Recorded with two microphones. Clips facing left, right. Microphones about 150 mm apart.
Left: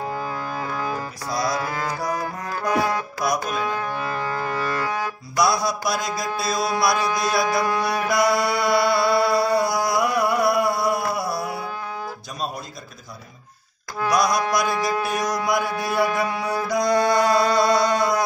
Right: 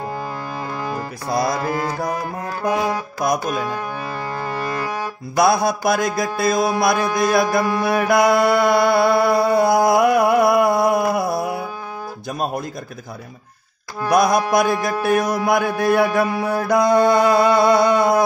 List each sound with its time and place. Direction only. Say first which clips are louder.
1.3 s mantra: right 4 dB; 55° right (ahead or behind)
1.7 s music: right 5 dB; 25° right (ahead or behind)
3.2 s mantra: right 5 dB; 50° right (ahead or behind)
5.3 s mantra: right 5 dB; 55° right (ahead or behind)
14.1 s mantra: right 6 dB; 55° right (ahead or behind)